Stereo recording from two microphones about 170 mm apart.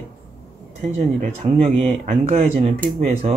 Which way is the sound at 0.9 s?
40° right (ahead or behind).